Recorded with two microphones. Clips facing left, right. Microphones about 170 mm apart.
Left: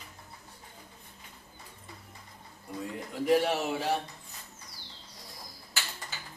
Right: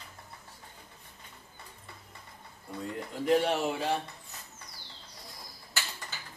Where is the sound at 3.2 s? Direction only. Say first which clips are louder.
Even; 5° left (ahead or behind).